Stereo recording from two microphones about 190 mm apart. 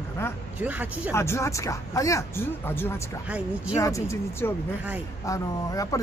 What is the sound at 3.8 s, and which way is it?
Speech, 15° left (ahead or behind).